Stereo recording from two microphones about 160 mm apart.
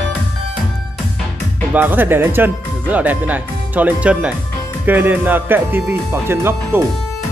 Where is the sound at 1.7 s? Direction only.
10° right (ahead or behind).